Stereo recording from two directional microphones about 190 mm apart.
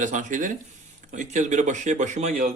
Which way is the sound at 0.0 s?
40° right (ahead or behind).